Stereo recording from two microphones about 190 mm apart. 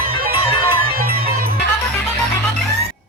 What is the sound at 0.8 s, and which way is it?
Music, 50° right (ahead or behind).